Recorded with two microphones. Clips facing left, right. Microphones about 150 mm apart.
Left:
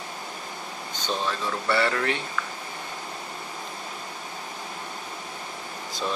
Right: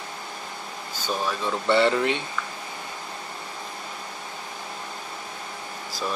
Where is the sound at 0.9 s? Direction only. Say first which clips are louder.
Right 1 dB; 10° right (ahead or behind).